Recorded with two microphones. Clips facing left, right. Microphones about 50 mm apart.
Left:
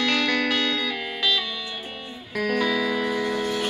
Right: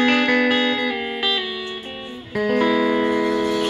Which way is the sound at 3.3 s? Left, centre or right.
Centre.